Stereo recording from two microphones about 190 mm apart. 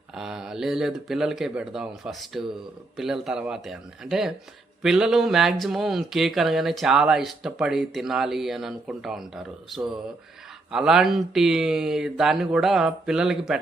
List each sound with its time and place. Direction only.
0.1 s speech: 5° right (ahead or behind)